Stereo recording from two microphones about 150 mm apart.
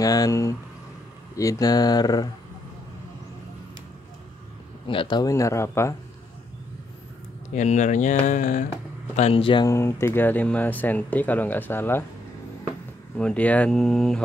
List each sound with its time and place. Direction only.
0.0 s speech: 25° left (ahead or behind)
4.8 s speech: 35° left (ahead or behind)
5.3 s speech: 20° left (ahead or behind)
7.5 s speech: 50° left (ahead or behind)
9.1 s speech: 45° left (ahead or behind)
9.7 s speech: 20° left (ahead or behind)
13.2 s speech: 10° left (ahead or behind)